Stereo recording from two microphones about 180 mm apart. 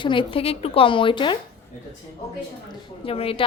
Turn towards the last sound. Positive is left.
turn(degrees=30)  # may be behind; listen again after turning